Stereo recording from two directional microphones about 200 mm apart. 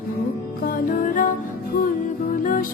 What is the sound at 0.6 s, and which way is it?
Music, 45° left (ahead or behind).